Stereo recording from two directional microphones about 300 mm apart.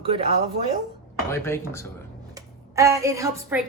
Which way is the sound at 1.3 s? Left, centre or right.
Centre.